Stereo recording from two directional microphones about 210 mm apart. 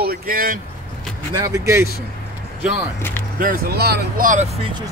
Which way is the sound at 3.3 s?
45° right (ahead or behind).